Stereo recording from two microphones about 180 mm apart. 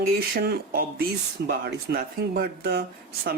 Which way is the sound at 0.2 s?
60° right (ahead or behind).